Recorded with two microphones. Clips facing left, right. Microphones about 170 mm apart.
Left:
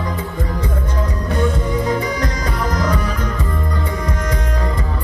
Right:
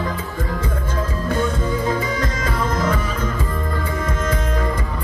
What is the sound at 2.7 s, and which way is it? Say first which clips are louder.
Music: left 1 dB; 25° right (ahead or behind).